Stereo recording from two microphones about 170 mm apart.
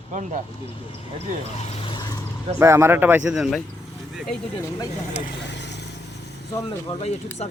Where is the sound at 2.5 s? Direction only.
15° right (ahead or behind).